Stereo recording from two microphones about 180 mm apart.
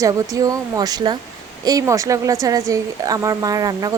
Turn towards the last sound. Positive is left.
turn(degrees=-20)  # may be behind; listen again after turning